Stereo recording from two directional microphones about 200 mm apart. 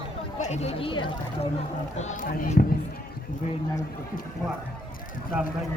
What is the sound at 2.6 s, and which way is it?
Speech, 45° left (ahead or behind).